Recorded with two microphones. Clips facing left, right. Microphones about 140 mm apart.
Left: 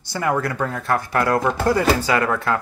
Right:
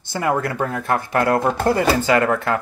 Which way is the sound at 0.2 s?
25° right (ahead or behind).